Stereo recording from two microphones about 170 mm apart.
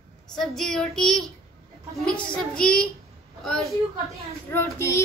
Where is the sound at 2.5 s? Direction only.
5° left (ahead or behind).